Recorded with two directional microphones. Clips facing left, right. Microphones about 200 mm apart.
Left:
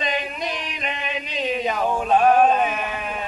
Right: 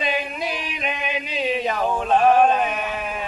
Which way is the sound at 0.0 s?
5° right (ahead or behind).